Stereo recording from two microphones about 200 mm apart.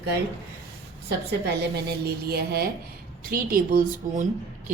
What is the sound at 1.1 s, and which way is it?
A woman's voice, 55° right (ahead or behind).